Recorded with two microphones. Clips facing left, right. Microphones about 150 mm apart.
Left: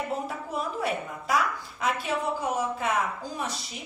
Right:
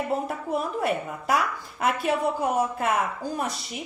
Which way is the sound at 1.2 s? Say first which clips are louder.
Even; 60° right (ahead or behind).